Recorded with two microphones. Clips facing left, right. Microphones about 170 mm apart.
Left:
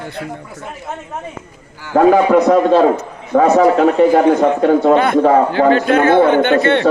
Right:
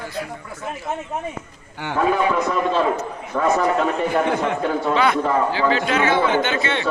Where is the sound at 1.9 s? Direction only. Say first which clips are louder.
Left 10 dB; 75° left (ahead or behind).